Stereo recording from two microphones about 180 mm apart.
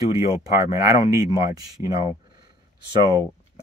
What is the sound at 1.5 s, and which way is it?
Speech, 20° right (ahead or behind).